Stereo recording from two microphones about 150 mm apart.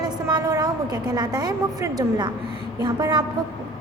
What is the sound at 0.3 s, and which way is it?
A woman's voice, 25° right (ahead or behind).